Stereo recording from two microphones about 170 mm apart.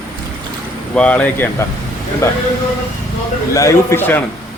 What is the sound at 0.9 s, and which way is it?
Speech, 5° left (ahead or behind).